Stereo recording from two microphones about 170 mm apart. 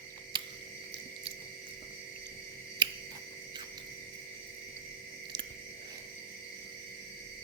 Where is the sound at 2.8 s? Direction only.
25° right (ahead or behind).